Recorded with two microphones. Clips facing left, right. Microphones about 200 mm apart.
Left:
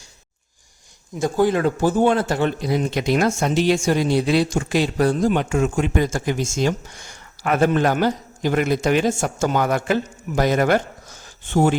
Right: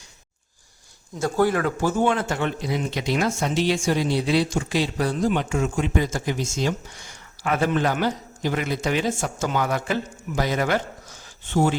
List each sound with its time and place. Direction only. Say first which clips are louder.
1.2 s a man's voice: left 3 dB; 20° left (ahead or behind); by 11.8 s 50° left (ahead or behind)